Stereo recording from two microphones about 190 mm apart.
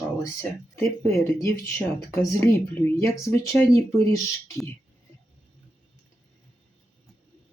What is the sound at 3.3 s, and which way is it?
Speech, 15° left (ahead or behind).